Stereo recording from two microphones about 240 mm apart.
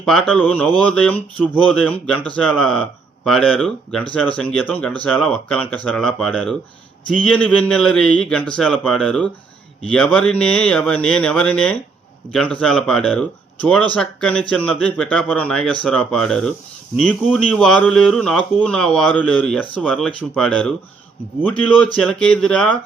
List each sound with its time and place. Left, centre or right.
0.0 s speech: centre